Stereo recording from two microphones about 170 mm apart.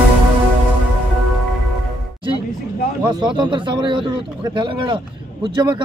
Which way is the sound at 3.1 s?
25° right (ahead or behind).